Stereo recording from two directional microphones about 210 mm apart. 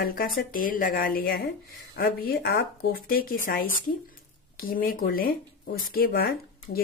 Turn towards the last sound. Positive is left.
turn(degrees=45)  # may be behind; listen again after turning